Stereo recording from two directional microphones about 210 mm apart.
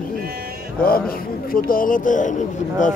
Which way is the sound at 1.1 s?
45° left (ahead or behind).